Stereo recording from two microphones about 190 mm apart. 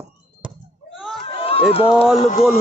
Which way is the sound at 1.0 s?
Centre (ahead or behind).